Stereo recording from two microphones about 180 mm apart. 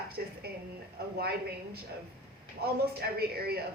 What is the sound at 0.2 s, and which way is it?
Speech, 65° right (ahead or behind).